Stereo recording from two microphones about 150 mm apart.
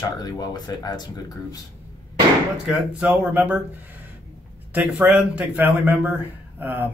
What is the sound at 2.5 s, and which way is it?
A man's voice, 5° right (ahead or behind).